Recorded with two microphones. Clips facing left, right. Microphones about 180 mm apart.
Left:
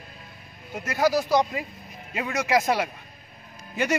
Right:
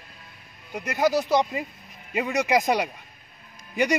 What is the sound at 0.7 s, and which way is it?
A man's voice, 15° right (ahead or behind).